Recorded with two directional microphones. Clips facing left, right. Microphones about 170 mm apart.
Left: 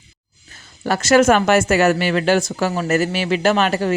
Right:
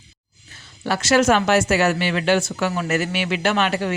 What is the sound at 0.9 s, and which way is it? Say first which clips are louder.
Speech: left 3 dB; 45° left (ahead or behind).